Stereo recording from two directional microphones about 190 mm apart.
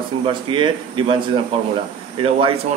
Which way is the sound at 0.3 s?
25° right (ahead or behind).